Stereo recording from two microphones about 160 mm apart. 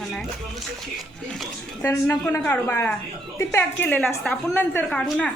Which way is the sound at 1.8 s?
15° left (ahead or behind).